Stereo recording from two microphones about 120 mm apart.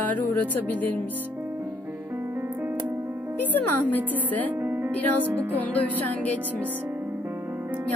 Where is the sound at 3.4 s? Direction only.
15° left (ahead or behind).